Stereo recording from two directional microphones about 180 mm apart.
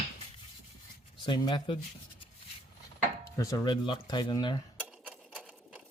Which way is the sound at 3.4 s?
20° left (ahead or behind).